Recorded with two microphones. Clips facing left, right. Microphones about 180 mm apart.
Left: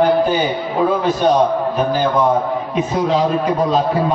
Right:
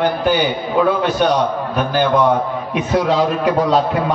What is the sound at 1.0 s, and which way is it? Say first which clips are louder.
A man's voice: left 2 dB; 70° right (ahead or behind).